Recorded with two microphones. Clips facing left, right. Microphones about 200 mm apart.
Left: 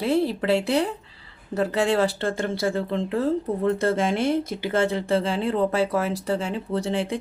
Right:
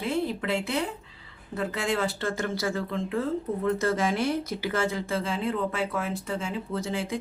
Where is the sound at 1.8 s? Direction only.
30° left (ahead or behind).